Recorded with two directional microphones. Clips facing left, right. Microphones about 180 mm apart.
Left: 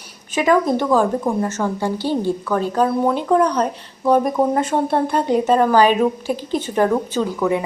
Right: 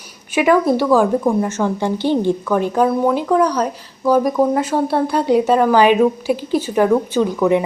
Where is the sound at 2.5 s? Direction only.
15° right (ahead or behind).